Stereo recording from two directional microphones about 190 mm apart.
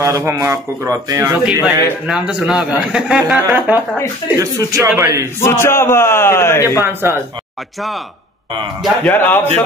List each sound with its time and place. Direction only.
0.0 s speech: 15° right (ahead or behind)
1.6 s a man's voice: 5° right (ahead or behind)
5.4 s a man's voice: 15° left (ahead or behind)
6.8 s speech: 10° right (ahead or behind)
8.8 s a man's voice: 10° left (ahead or behind)